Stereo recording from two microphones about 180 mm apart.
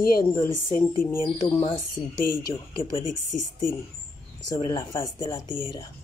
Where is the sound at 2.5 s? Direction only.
15° left (ahead or behind).